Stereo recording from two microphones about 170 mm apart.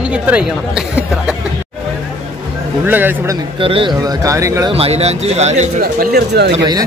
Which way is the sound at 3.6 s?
30° right (ahead or behind).